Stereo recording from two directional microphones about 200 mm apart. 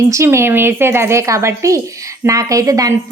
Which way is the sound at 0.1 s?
15° right (ahead or behind).